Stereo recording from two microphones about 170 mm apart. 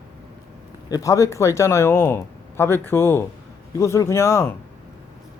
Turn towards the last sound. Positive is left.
turn(degrees=15)  # may be behind; listen again after turning